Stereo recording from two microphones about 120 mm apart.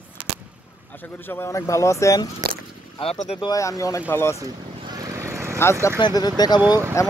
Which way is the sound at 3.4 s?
30° left (ahead or behind).